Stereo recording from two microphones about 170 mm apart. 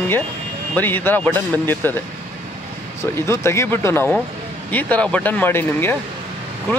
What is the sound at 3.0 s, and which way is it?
Speech, 15° left (ahead or behind).